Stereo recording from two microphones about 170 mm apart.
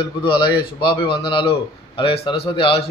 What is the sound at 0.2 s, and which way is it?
A man's voice, 30° left (ahead or behind).